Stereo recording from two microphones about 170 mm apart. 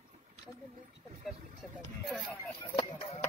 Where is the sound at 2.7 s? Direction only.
35° left (ahead or behind).